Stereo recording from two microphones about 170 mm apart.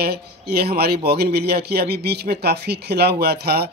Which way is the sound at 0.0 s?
70° right (ahead or behind).